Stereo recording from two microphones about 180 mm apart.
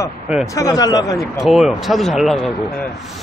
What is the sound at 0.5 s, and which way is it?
Speech, 20° left (ahead or behind).